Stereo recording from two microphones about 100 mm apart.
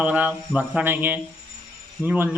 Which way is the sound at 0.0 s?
15° right (ahead or behind).